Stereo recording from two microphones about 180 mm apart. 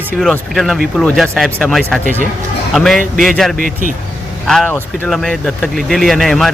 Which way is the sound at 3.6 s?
50° right (ahead or behind).